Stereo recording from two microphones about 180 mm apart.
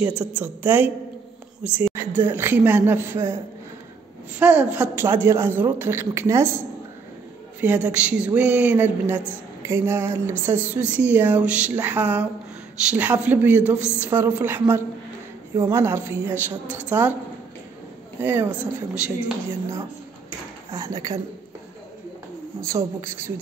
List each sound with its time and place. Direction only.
0.0 s a woman's voice: 10° right (ahead or behind)
4.4 s a woman's voice: 5° right (ahead or behind)
7.6 s a woman's voice: 10° right (ahead or behind)
18.2 s a woman's voice: 10° right (ahead or behind)
20.7 s speech: 20° right (ahead or behind)
22.6 s a woman's voice: 15° right (ahead or behind)